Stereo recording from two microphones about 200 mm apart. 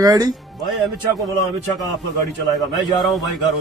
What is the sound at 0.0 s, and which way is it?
Speech, 20° right (ahead or behind).